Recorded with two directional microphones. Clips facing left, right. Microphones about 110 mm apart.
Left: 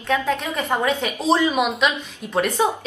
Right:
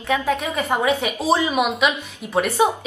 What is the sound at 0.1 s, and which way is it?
A woman's voice, 10° right (ahead or behind).